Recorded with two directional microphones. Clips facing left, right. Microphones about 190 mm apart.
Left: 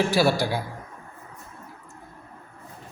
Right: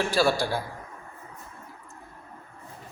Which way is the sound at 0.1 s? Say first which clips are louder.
Left 2 dB; 10° left (ahead or behind).